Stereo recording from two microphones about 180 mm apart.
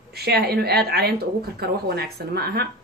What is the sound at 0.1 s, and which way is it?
A woman's voice, 65° right (ahead or behind).